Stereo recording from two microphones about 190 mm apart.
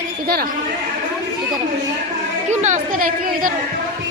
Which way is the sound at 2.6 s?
45° right (ahead or behind).